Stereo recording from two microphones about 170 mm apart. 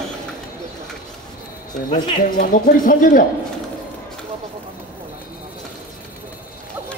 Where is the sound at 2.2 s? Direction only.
55° left (ahead or behind).